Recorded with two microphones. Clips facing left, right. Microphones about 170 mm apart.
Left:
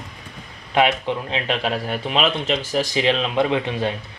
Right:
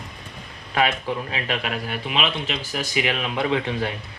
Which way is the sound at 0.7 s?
25° left (ahead or behind).